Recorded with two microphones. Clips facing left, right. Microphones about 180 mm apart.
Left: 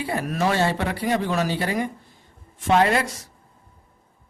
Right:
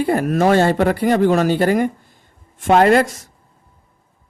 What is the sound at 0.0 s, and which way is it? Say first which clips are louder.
Speech: right 8 dB; 50° right (ahead or behind).